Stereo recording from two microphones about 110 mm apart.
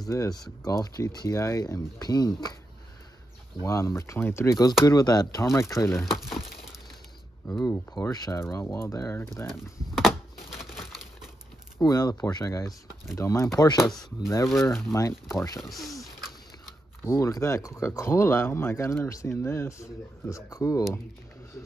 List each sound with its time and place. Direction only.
0.1 s speech: 35° left (ahead or behind)
3.6 s speech: 30° left (ahead or behind)
4.8 s speech: 35° left (ahead or behind)
8.1 s speech: 25° left (ahead or behind)
9.5 s crumpling: centre (ahead or behind)
11.8 s speech: 35° left (ahead or behind)
14.2 s speech: 25° left (ahead or behind)
15.6 s speech: centre (ahead or behind)
17.0 s speech: 30° left (ahead or behind)